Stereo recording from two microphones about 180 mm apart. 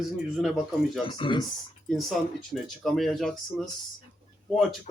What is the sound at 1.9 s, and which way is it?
Speech, centre (ahead or behind).